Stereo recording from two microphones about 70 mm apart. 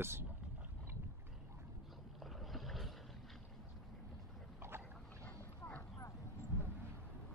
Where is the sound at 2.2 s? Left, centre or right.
Centre.